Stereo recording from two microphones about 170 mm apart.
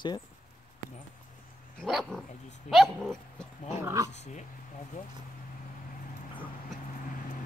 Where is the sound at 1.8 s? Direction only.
Centre (ahead or behind).